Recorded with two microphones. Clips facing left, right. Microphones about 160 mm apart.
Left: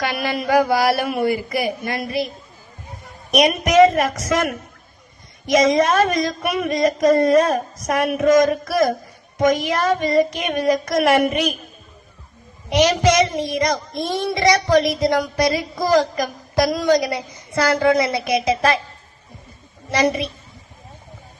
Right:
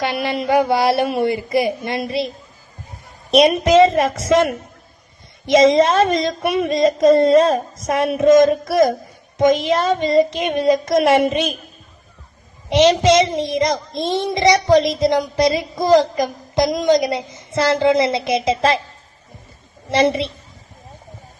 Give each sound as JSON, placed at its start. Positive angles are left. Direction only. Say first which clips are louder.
{"t": 0.0, "sound": "child singing", "louder": "right 2 dB", "side_deg": -25}
{"t": 3.3, "sound": "child singing", "louder": "right 3 dB", "side_deg": -25}
{"t": 12.7, "sound": "child singing", "louder": "right 3 dB", "side_deg": -25}
{"t": 19.9, "sound": "child singing", "louder": "right 3 dB", "side_deg": -25}